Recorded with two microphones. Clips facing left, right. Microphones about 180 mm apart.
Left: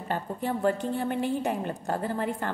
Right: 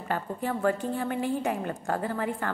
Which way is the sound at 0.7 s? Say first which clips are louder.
Left 1 dB; 35° left (ahead or behind).